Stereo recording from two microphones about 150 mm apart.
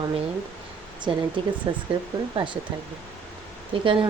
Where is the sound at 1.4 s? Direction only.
35° right (ahead or behind).